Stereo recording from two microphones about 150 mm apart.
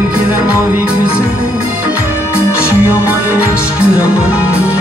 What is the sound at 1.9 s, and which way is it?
Music, 15° left (ahead or behind).